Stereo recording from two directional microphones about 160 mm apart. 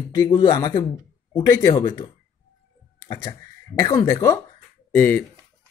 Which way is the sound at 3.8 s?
20° left (ahead or behind).